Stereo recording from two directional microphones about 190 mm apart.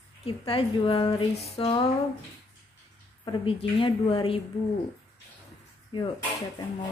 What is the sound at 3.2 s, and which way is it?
A woman's voice, 25° left (ahead or behind).